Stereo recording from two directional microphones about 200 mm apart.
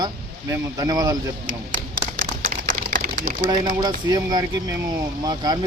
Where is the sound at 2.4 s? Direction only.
45° right (ahead or behind).